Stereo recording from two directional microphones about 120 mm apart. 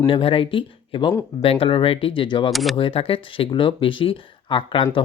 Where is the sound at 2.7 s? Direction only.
50° left (ahead or behind).